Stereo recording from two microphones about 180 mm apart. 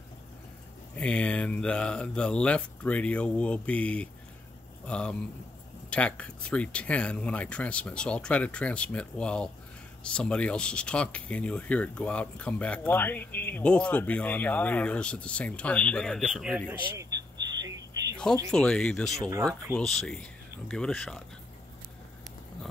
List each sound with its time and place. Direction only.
0.9 s speech: 5° left (ahead or behind)
16.9 s a sound: 20° right (ahead or behind)
18.5 s speech: 5° left (ahead or behind)